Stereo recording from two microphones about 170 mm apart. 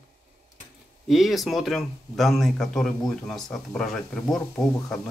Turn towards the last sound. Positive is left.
turn(degrees=10)  # may be behind; listen again after turning